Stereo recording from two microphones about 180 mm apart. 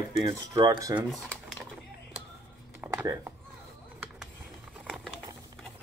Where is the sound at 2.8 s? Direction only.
10° right (ahead or behind).